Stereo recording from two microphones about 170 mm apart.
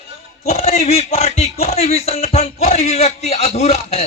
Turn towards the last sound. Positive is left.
turn(degrees=40)  # may be behind; listen again after turning